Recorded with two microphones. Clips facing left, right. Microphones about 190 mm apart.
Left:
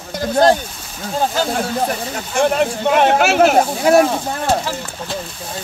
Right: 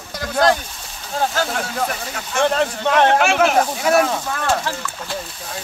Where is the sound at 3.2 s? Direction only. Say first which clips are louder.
Left 4 dB; 40° left (ahead or behind).